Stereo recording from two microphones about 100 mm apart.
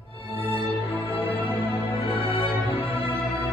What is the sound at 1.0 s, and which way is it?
Music, 70° left (ahead or behind).